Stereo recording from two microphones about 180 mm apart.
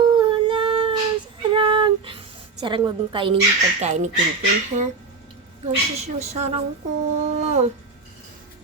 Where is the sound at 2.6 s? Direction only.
25° right (ahead or behind).